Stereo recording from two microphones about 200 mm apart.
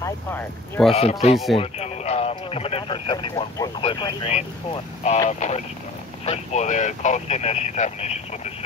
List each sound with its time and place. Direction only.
0.0 s speech: 10° left (ahead or behind)
0.9 s speech: 30° left (ahead or behind)